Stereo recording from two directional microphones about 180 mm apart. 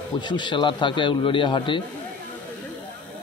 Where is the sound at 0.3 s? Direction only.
25° left (ahead or behind).